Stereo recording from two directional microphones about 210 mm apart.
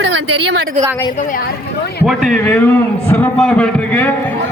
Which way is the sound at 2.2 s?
5° left (ahead or behind).